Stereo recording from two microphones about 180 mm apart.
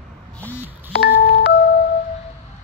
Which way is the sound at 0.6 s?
10° right (ahead or behind).